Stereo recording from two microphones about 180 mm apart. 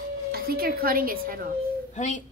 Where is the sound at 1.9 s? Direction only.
45° left (ahead or behind).